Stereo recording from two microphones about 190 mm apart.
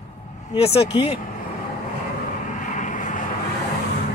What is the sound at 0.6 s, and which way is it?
Speech, 30° left (ahead or behind).